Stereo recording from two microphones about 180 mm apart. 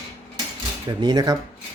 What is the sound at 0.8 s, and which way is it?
Speech, 25° right (ahead or behind).